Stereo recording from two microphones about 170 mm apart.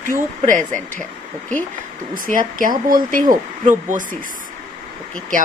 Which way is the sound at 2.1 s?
55° right (ahead or behind).